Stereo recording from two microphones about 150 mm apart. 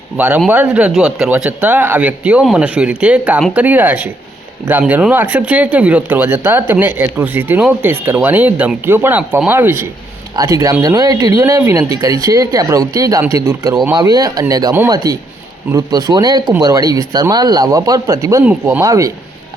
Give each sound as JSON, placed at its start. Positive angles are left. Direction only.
{"t": 0.2, "sound": "speech", "side_deg": -10}
{"t": 18.4, "sound": "speech", "side_deg": -10}
{"t": 18.8, "sound": "speech", "side_deg": -20}